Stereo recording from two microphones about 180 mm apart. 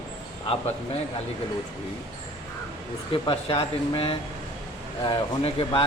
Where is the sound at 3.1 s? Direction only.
30° left (ahead or behind).